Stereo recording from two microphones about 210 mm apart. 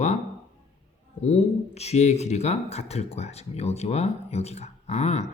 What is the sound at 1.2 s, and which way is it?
Speech, 30° left (ahead or behind).